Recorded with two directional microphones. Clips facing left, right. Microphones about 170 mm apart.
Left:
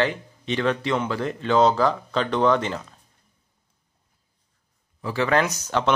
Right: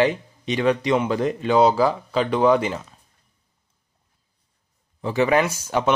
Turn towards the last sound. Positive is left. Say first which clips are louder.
# right 2 dB
turn(degrees=-10)  # may be behind; listen again after turning